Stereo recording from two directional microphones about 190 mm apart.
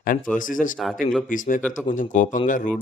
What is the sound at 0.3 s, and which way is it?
A man's voice, 45° left (ahead or behind).